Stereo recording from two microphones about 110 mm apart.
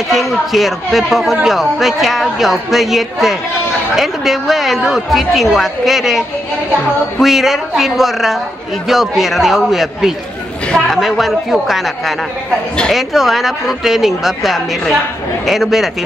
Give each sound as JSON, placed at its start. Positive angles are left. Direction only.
{"t": 0.1, "sound": "speech", "side_deg": 0}